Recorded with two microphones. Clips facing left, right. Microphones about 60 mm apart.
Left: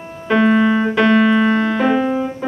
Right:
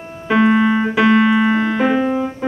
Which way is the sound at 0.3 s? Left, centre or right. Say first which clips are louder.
Even; centre.